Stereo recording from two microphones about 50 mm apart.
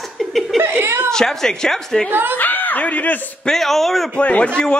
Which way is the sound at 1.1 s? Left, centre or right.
Centre.